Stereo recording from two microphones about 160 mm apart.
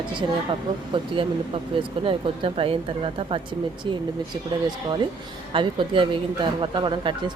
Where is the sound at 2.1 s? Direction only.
35° right (ahead or behind).